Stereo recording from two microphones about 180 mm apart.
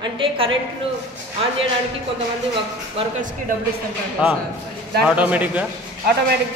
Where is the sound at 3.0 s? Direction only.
30° right (ahead or behind).